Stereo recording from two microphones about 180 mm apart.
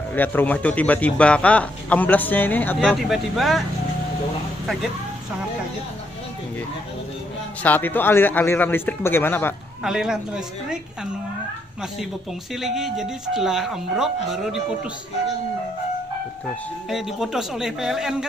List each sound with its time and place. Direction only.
0.1 s a man's voice: 10° left (ahead or behind)
2.8 s speech: centre (ahead or behind)
7.6 s a man's voice: 10° left (ahead or behind)
9.8 s speech: 5° right (ahead or behind)
12.5 s speech: centre (ahead or behind)
16.9 s speech: centre (ahead or behind)